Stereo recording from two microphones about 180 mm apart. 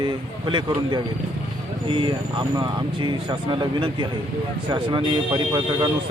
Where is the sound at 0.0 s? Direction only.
25° right (ahead or behind).